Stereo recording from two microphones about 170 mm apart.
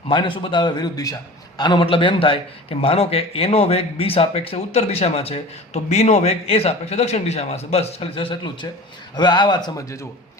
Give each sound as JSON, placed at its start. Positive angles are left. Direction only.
{"t": 0.1, "sound": "a man's voice", "side_deg": 30}